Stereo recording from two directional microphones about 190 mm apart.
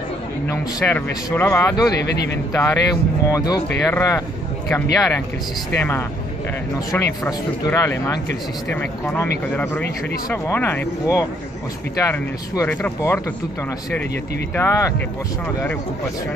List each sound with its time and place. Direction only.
0.5 s speech: 15° left (ahead or behind)
2.0 s speech: 60° left (ahead or behind)
2.5 s speech: 15° left (ahead or behind)
5.8 s speech: 10° left (ahead or behind)
10.3 s speech: 10° left (ahead or behind)
14.5 s speech: 15° left (ahead or behind)